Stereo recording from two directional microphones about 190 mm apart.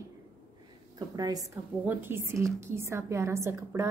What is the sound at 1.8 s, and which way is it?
A woman's voice, 10° right (ahead or behind).